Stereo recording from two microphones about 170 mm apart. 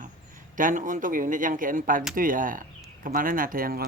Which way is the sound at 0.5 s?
50° right (ahead or behind).